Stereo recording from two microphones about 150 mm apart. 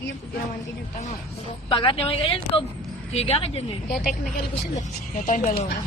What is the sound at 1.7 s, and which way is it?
A woman's voice, 35° left (ahead or behind).